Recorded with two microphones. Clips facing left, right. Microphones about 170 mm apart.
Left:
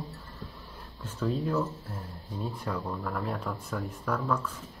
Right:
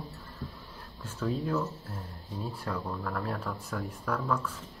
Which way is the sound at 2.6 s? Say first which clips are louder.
Even; 10° left (ahead or behind).